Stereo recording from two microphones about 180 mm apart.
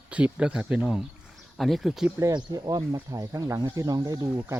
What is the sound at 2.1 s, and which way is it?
Speech, 20° right (ahead or behind).